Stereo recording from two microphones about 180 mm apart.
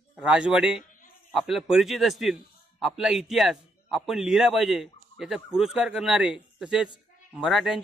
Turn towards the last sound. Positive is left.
turn(degrees=0)  # may be behind; listen again after turning